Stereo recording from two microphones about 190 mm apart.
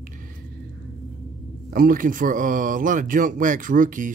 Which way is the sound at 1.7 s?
45° right (ahead or behind).